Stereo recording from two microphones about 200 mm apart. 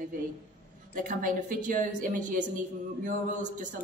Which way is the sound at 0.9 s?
40° right (ahead or behind).